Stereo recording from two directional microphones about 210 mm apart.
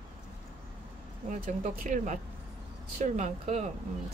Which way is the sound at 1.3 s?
35° right (ahead or behind).